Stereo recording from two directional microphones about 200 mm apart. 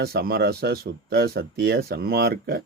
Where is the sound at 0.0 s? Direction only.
50° right (ahead or behind).